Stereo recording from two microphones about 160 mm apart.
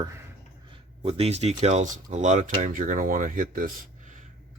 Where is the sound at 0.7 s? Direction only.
40° right (ahead or behind).